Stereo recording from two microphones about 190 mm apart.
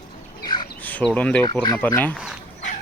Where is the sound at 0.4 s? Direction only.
25° left (ahead or behind).